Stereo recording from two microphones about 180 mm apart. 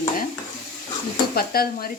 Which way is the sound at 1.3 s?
55° left (ahead or behind).